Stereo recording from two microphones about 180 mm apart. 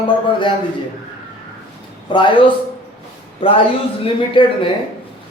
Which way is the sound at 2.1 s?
25° left (ahead or behind).